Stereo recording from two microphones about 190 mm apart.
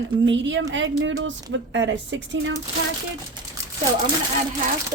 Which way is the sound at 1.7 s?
75° right (ahead or behind).